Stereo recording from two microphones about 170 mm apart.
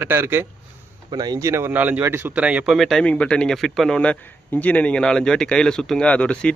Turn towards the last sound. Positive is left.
turn(degrees=5)  # may be behind; listen again after turning